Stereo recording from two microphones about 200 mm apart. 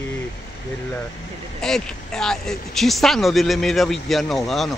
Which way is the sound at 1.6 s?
Centre (ahead or behind).